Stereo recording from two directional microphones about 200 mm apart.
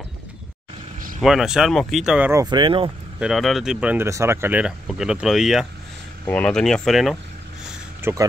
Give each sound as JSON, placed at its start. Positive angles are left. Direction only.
{"t": 1.2, "sound": "speech", "side_deg": 0}
{"t": 2.4, "sound": "speech", "side_deg": -25}
{"t": 3.2, "sound": "speech", "side_deg": 0}
{"t": 8.0, "sound": "speech", "side_deg": -15}